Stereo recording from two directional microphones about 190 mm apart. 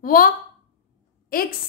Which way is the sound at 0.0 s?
50° left (ahead or behind).